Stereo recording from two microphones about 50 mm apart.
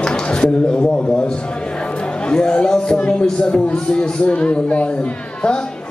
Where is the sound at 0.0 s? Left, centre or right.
Centre.